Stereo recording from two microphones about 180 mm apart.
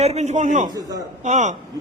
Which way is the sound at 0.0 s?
35° right (ahead or behind).